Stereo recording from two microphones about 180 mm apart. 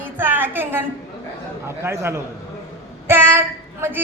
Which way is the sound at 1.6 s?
15° right (ahead or behind).